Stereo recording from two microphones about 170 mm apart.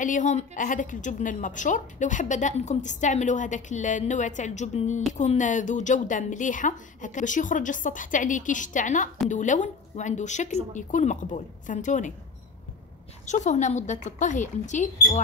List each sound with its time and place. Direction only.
0.0 s a woman's voice: 50° left (ahead or behind)
13.2 s a woman's voice: 45° left (ahead or behind)